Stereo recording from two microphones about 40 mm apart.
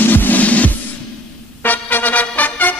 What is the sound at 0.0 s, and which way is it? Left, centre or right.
Music, left.